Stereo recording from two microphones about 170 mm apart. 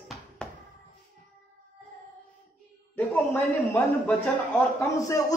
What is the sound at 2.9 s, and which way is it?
A man's voice, 10° left (ahead or behind).